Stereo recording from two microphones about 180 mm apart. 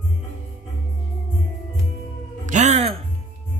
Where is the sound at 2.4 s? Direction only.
40° right (ahead or behind).